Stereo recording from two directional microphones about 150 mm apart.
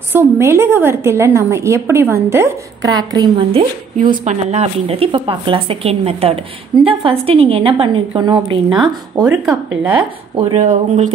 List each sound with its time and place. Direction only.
0.1 s a woman's voice: 15° right (ahead or behind); by 4.2 s 35° right (ahead or behind)
4.2 s a woman's voice: 45° right (ahead or behind); by 9.3 s 30° right (ahead or behind)
9.5 s a woman's voice: 10° right (ahead or behind)
10.3 s speech: 45° right (ahead or behind)